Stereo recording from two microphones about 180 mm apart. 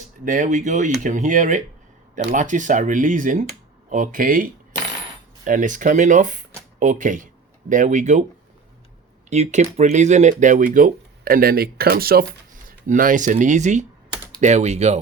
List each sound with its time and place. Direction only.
0.3 s speech: 45° right (ahead or behind)
5.5 s speech: 45° right (ahead or behind)
9.3 s speech: 40° right (ahead or behind)